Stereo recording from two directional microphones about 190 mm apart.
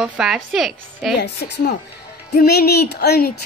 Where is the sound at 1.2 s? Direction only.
60° left (ahead or behind).